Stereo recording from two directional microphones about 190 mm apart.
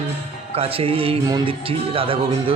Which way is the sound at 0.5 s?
30° right (ahead or behind).